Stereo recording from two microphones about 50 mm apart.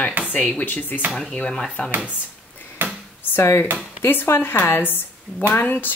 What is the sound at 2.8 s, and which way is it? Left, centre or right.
Drawer open or close, right.